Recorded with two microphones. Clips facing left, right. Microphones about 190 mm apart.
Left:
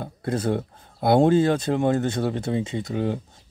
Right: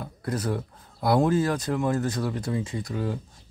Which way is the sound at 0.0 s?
30° left (ahead or behind).